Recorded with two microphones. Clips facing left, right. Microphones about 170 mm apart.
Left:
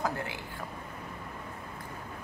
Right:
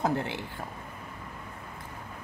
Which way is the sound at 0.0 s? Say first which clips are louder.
Right 5 dB; 25° right (ahead or behind).